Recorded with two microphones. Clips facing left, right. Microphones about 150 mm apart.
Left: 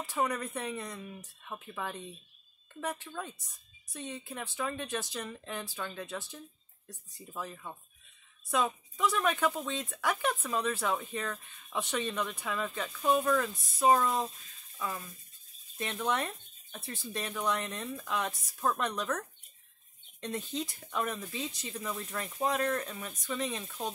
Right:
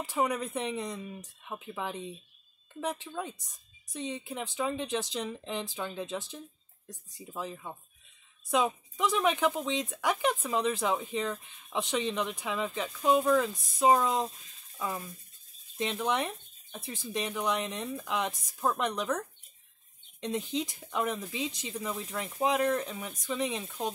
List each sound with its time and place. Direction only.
0.0 s speech: 15° right (ahead or behind)